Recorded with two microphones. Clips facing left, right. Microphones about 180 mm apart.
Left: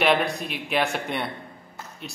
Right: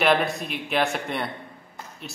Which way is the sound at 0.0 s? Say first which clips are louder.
Even; centre (ahead or behind).